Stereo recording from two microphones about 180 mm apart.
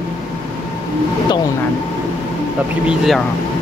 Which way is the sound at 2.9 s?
Centre (ahead or behind).